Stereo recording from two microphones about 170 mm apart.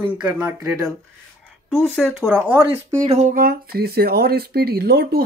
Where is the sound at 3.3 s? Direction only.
60° right (ahead or behind).